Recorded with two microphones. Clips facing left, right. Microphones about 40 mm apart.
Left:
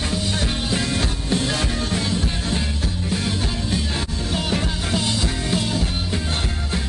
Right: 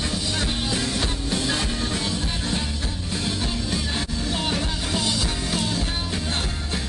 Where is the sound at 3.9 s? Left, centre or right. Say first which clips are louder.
Left 1 dB; left.